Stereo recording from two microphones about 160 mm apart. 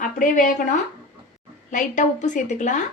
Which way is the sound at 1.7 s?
50° left (ahead or behind).